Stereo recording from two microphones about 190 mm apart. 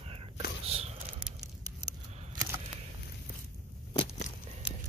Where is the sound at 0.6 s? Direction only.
30° right (ahead or behind).